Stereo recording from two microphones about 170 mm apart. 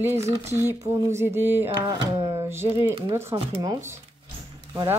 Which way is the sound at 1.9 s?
25° right (ahead or behind).